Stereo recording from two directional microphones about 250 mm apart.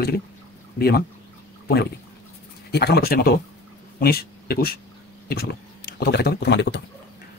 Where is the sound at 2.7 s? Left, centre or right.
Left.